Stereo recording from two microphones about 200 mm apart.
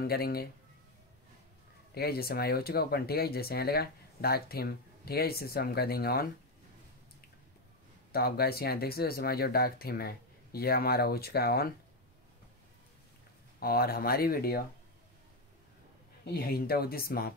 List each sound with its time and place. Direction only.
0.0 s speech: 50° left (ahead or behind)
2.0 s speech: 50° left (ahead or behind)
8.1 s speech: 50° left (ahead or behind)
13.6 s speech: 50° left (ahead or behind)
16.3 s speech: 50° left (ahead or behind)